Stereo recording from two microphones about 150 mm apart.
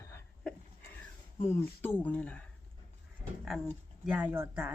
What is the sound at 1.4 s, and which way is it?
Speech, 15° left (ahead or behind).